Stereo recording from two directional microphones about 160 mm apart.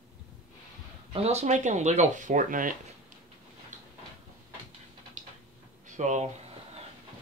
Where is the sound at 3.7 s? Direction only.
50° right (ahead or behind).